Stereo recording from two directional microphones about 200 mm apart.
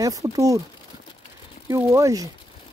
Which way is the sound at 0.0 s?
15° right (ahead or behind).